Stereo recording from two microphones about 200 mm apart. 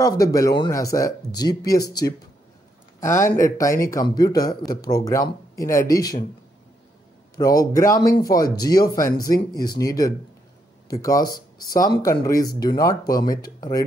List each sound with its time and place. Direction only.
0.0 s a man's voice: 15° left (ahead or behind)
7.3 s a man's voice: 15° left (ahead or behind)